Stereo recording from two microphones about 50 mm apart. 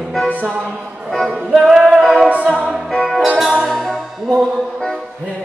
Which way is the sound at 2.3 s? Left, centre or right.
Right.